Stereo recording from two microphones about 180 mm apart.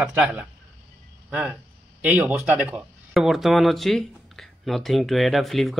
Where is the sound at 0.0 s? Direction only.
10° right (ahead or behind).